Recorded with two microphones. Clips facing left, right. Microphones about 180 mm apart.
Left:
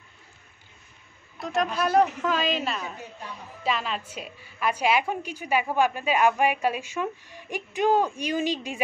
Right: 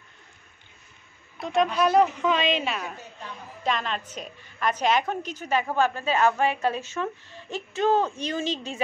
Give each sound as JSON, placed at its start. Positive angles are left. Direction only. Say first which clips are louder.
{"t": 1.4, "sound": "a woman's voice", "louder": "right 3 dB", "side_deg": 0}